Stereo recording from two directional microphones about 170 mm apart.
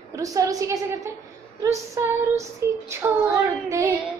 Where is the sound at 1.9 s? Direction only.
20° right (ahead or behind).